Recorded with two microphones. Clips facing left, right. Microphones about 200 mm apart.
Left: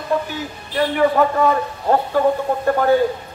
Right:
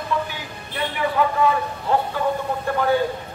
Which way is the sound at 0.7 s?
45° left (ahead or behind).